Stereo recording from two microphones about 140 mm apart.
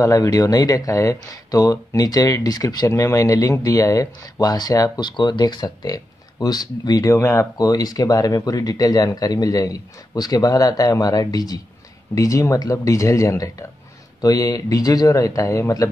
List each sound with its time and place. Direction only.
0.0 s speech: 25° left (ahead or behind)